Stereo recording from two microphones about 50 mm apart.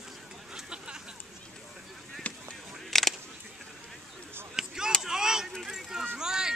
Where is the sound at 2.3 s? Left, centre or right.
Left.